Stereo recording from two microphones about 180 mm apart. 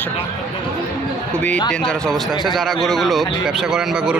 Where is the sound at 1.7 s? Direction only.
5° left (ahead or behind).